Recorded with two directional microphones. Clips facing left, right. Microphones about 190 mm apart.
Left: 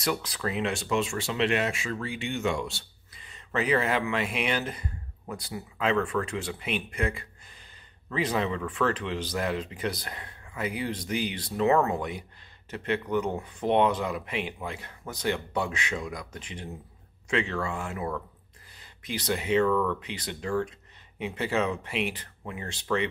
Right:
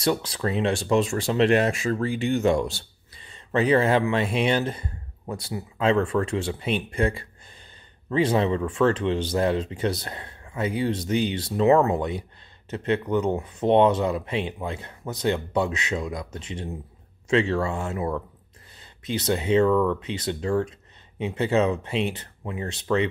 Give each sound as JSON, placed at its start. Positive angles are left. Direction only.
{"t": 0.0, "sound": "speech", "side_deg": -30}